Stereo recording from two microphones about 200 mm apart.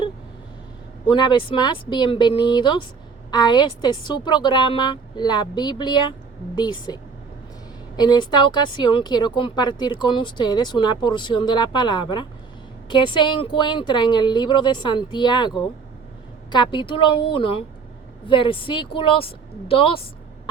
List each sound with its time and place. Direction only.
1.0 s speech: 20° left (ahead or behind)